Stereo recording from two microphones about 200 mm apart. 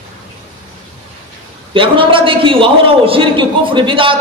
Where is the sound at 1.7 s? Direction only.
25° right (ahead or behind).